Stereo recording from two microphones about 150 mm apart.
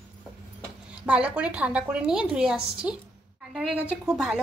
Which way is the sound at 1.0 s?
5° right (ahead or behind).